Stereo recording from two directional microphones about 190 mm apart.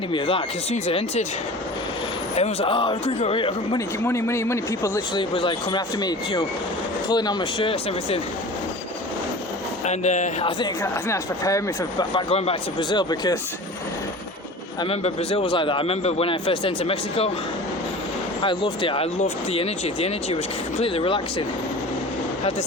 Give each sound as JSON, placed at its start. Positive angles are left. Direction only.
{"t": 0.1, "sound": "speech", "side_deg": 30}
{"t": 2.3, "sound": "a man's voice", "side_deg": 30}
{"t": 4.0, "sound": "a man's voice", "side_deg": 15}
{"t": 9.8, "sound": "speech", "side_deg": 35}
{"t": 10.8, "sound": "a man's voice", "side_deg": 15}
{"t": 14.8, "sound": "a man's voice", "side_deg": 30}
{"t": 18.4, "sound": "speech", "side_deg": 25}